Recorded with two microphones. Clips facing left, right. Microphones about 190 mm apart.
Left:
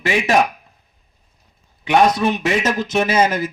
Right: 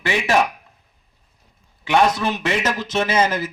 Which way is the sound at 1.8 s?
15° left (ahead or behind).